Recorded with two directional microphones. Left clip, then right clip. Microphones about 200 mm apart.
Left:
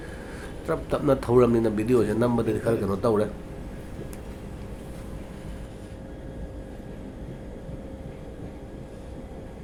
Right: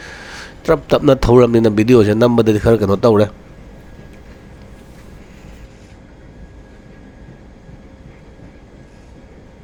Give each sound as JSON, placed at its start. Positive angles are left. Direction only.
{"t": 0.0, "sound": "a man's voice", "side_deg": -45}